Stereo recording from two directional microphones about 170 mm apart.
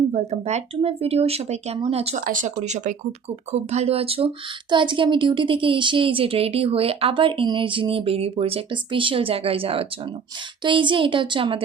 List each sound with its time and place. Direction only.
0.1 s a woman's voice: 40° right (ahead or behind)